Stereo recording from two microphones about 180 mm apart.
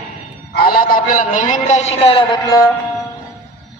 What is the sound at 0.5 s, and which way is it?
A man's voice, 55° left (ahead or behind).